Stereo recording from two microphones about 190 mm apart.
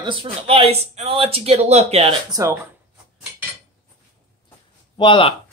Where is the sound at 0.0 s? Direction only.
30° right (ahead or behind).